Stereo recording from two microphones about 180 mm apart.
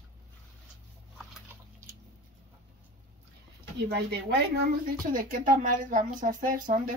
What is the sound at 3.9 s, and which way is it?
A woman's voice, 65° right (ahead or behind).